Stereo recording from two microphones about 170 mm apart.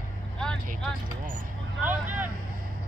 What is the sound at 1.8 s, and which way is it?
Vehicle, 10° right (ahead or behind).